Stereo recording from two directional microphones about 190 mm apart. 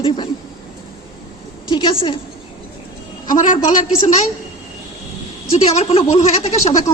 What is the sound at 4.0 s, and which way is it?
Speech, 40° left (ahead or behind).